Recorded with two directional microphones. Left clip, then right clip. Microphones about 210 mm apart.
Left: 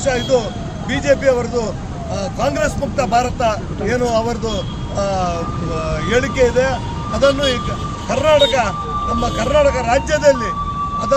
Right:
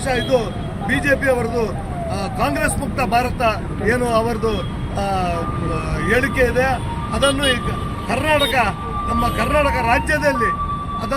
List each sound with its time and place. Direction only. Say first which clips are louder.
0.0 s speech: left 2 dB; 5° left (ahead or behind)